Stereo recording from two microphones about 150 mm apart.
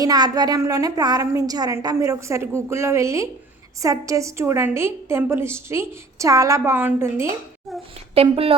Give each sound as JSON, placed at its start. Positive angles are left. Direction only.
{"t": 0.0, "sound": "a woman's voice", "side_deg": -25}
{"t": 8.1, "sound": "speech", "side_deg": -40}